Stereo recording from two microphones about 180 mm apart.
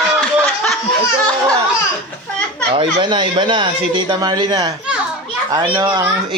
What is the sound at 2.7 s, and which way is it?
A man's voice, 25° right (ahead or behind).